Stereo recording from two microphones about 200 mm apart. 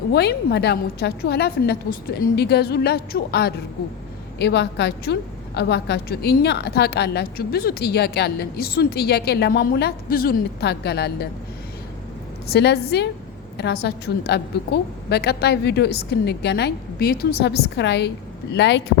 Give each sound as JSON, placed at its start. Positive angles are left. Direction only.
{"t": 0.1, "sound": "a woman's voice", "side_deg": 55}
{"t": 12.5, "sound": "a woman's voice", "side_deg": 55}